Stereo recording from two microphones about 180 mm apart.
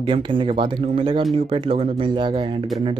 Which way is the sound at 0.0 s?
25° right (ahead or behind).